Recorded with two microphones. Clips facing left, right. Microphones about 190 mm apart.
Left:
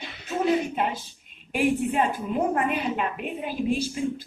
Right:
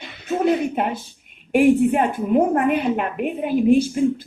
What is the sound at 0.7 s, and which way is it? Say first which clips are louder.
A woman's voice: right 4 dB; 55° right (ahead or behind).